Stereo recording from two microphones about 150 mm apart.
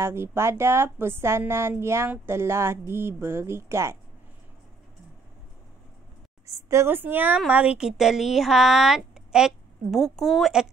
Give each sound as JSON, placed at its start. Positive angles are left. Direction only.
{"t": 0.0, "sound": "a woman's voice", "side_deg": -15}
{"t": 6.4, "sound": "a woman's voice", "side_deg": -20}